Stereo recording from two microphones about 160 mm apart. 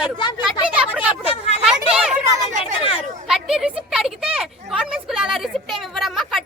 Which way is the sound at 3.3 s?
5° right (ahead or behind).